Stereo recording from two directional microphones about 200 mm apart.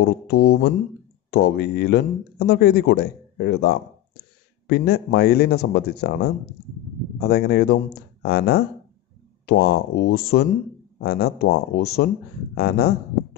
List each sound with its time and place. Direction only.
0.0 s speech: 55° left (ahead or behind)
7.2 s speech: 55° left (ahead or behind)